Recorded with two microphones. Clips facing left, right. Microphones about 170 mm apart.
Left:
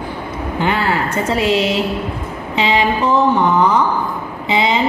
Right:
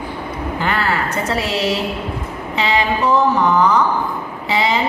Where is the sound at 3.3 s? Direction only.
30° left (ahead or behind).